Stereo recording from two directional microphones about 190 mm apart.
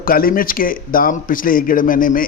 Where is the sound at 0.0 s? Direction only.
50° left (ahead or behind).